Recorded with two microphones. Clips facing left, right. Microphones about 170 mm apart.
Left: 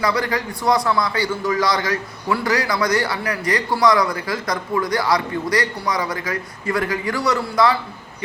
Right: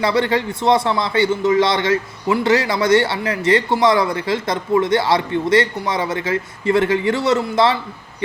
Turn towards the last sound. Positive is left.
turn(degrees=-25)  # may be behind; listen again after turning